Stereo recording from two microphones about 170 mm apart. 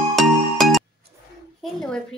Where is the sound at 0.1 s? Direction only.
Centre (ahead or behind).